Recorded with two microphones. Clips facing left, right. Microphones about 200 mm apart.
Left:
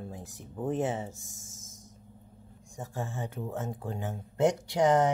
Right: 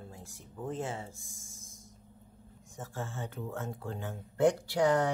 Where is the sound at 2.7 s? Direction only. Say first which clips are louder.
Left 3 dB; 15° left (ahead or behind).